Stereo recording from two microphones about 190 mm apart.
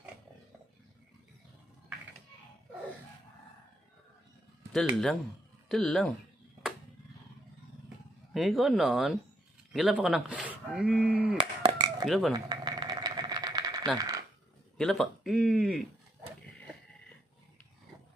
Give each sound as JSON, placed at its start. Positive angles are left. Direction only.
{"t": 4.7, "sound": "speech", "side_deg": 0}
{"t": 8.3, "sound": "speech", "side_deg": 0}
{"t": 11.3, "sound": "a sound", "side_deg": -25}
{"t": 12.1, "sound": "speech", "side_deg": 0}
{"t": 12.4, "sound": "a sound", "side_deg": -20}
{"t": 13.9, "sound": "coin", "side_deg": -20}
{"t": 14.8, "sound": "speech", "side_deg": 0}